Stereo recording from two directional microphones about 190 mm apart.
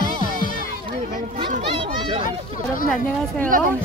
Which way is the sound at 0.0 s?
45° left (ahead or behind).